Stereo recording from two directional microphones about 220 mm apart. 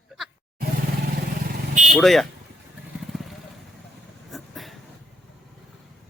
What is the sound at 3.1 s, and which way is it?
Vehicle, centre (ahead or behind).